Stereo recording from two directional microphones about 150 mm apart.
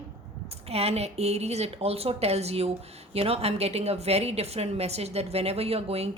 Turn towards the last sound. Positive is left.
turn(degrees=-45)  # may be behind; listen again after turning